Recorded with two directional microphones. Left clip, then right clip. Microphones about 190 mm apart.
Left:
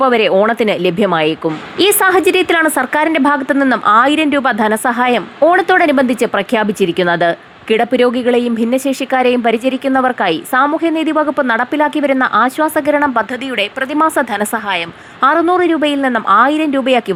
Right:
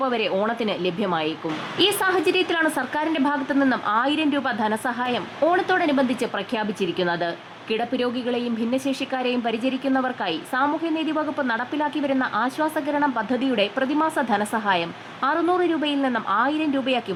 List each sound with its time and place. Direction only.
0.0 s a woman's voice: 30° left (ahead or behind)